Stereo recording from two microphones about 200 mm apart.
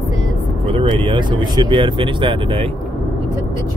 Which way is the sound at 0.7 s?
25° right (ahead or behind).